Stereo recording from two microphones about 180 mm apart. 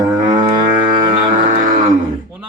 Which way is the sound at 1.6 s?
45° right (ahead or behind).